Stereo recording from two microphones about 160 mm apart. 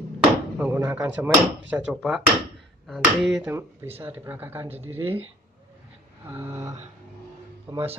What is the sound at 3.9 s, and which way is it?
Speech, 15° right (ahead or behind).